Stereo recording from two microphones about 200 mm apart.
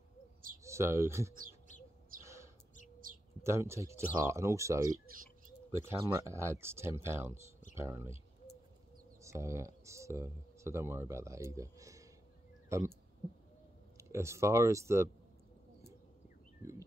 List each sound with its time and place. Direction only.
0.7 s speech: 15° right (ahead or behind)
2.2 s bird: 15° right (ahead or behind)
3.0 s bird: 45° right (ahead or behind)
3.4 s speech: 15° right (ahead or behind)
9.2 s speech: 15° right (ahead or behind)
13.9 s speech: 15° right (ahead or behind)